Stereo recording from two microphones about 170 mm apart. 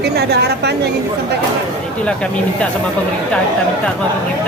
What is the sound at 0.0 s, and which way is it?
Speech, 75° right (ahead or behind).